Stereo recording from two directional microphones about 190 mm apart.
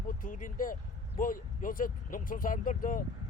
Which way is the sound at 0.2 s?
45° left (ahead or behind).